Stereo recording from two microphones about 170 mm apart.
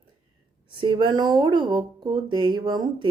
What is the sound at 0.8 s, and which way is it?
Speech, 30° right (ahead or behind).